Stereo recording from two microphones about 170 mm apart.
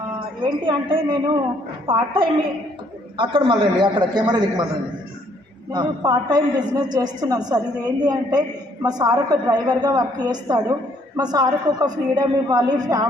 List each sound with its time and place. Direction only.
0.4 s a man's voice: 30° right (ahead or behind)
5.7 s a man's voice: 25° right (ahead or behind)